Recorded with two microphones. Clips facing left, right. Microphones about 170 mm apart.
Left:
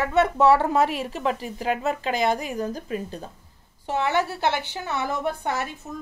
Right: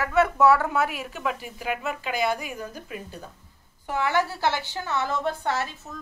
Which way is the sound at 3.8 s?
25° left (ahead or behind).